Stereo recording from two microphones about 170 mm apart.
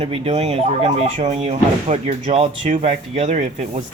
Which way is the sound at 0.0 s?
35° right (ahead or behind).